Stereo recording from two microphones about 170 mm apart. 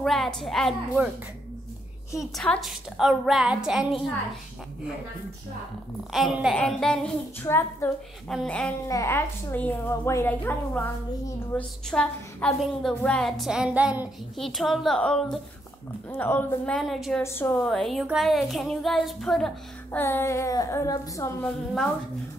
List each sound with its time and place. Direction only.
0.0 s a woman's voice: centre (ahead or behind)
2.3 s a woman's voice: 5° left (ahead or behind)
6.1 s a woman's voice: centre (ahead or behind); by 7.9 s 15° left (ahead or behind)
8.3 s a woman's voice: 5° left (ahead or behind)
8.8 s a woman's voice: 15° left (ahead or behind); by 17.2 s centre (ahead or behind)
17.2 s a woman's voice: 15° left (ahead or behind)
20.0 s a woman's voice: 15° left (ahead or behind)